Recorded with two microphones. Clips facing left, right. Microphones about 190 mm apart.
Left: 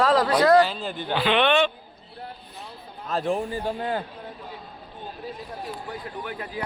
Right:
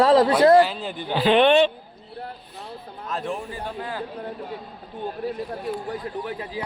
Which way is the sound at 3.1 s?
35° left (ahead or behind).